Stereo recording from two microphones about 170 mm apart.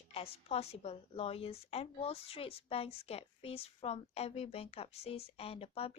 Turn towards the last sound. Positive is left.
turn(degrees=35)  # may be behind; listen again after turning